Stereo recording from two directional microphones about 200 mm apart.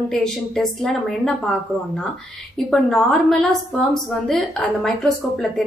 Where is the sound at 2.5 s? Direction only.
5° left (ahead or behind).